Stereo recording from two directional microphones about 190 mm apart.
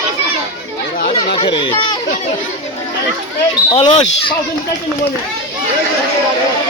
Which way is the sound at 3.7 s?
30° left (ahead or behind).